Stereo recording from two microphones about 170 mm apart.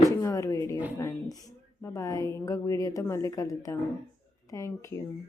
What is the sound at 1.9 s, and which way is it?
A woman's voice, 20° left (ahead or behind).